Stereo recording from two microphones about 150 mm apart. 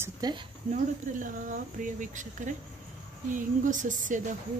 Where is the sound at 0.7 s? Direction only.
60° right (ahead or behind).